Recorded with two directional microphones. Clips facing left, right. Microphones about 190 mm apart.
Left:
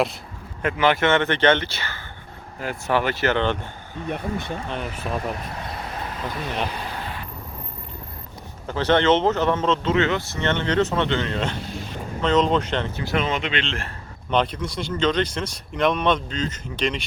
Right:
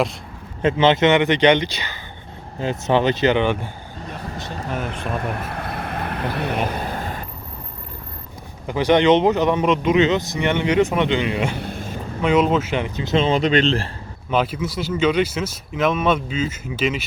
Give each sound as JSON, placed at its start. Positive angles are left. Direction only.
{"t": 0.6, "sound": "speech", "side_deg": -25}
{"t": 4.1, "sound": "speech", "side_deg": 55}
{"t": 5.1, "sound": "speech", "side_deg": -60}
{"t": 6.7, "sound": "vehicle", "side_deg": -45}
{"t": 8.6, "sound": "speech", "side_deg": -15}
{"t": 11.6, "sound": "vehicle", "side_deg": -55}
{"t": 12.2, "sound": "speech", "side_deg": -10}
{"t": 13.0, "sound": "speech", "side_deg": -25}
{"t": 14.3, "sound": "speech", "side_deg": -5}